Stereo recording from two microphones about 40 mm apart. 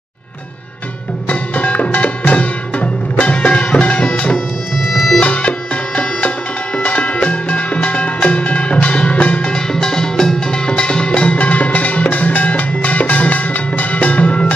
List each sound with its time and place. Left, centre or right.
1.3 s music: left
4.7 s music: centre
5.2 s bagpipes: left
6.8 s music: left
9.5 s music: centre; by 14.5 s left